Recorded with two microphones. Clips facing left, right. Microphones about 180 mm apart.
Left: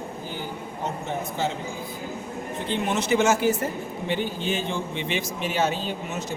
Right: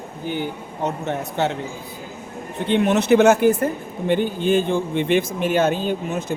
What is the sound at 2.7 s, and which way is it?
Speech, 65° right (ahead or behind).